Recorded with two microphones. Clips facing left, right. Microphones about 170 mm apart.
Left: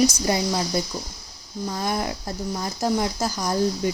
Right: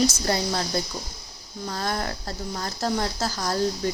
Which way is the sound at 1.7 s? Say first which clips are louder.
Left 2 dB; 10° left (ahead or behind).